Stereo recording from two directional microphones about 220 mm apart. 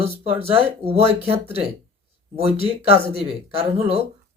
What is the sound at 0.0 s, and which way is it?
Speech, 25° right (ahead or behind).